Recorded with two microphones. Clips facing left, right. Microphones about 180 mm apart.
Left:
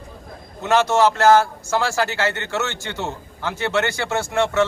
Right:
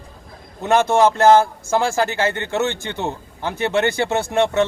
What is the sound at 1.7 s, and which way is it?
Speech, 15° right (ahead or behind).